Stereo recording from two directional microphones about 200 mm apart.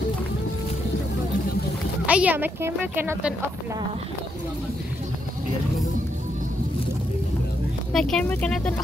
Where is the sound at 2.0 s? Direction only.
5° right (ahead or behind).